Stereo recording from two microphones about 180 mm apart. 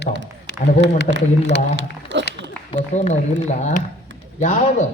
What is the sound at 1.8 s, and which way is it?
Speech, 90° right.